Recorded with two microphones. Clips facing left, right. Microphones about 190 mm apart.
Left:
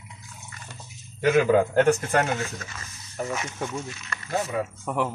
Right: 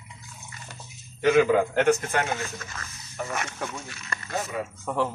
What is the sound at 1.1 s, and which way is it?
A man's voice, 40° left (ahead or behind).